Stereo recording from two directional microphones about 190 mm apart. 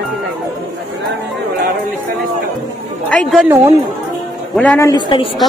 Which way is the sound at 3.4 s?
10° right (ahead or behind).